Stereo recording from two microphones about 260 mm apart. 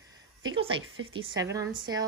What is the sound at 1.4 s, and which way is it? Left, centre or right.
Speech, centre.